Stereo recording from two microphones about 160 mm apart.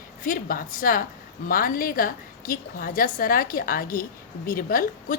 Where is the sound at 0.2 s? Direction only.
60° left (ahead or behind).